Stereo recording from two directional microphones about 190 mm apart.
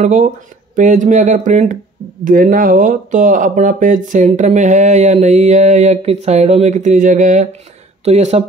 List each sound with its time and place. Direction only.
0.0 s speech: 40° right (ahead or behind)